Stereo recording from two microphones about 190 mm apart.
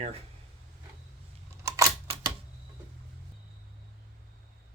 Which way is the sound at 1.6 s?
15° right (ahead or behind).